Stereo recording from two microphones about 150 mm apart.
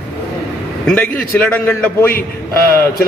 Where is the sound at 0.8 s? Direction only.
10° left (ahead or behind).